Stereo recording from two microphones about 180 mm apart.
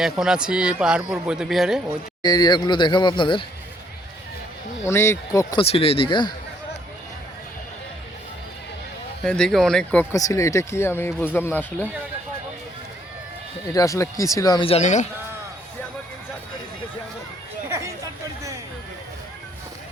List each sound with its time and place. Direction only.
0.0 s speech: 5° right (ahead or behind)
2.2 s speech: 20° left (ahead or behind)
4.9 s speech: 15° left (ahead or behind)
5.5 s speech: 30° left (ahead or behind)
9.2 s speech: 5° left (ahead or behind)
10.2 s speech: 20° left (ahead or behind)
13.7 s speech: 15° left (ahead or behind); by 15.0 s 40° left (ahead or behind)
17.7 s chatter: 15° right (ahead or behind)